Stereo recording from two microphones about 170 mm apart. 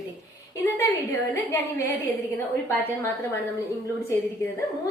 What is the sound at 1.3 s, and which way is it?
Speech, 15° left (ahead or behind).